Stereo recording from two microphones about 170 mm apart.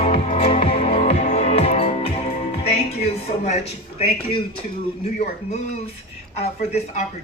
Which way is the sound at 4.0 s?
35° left (ahead or behind).